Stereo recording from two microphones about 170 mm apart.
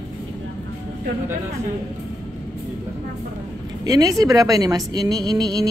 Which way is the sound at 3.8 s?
20° right (ahead or behind).